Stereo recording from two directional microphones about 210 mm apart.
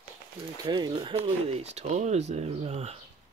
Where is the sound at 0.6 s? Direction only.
20° right (ahead or behind).